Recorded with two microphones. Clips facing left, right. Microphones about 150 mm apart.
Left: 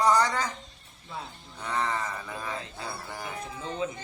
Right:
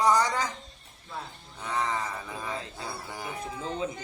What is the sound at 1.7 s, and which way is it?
A man's voice, 15° right (ahead or behind).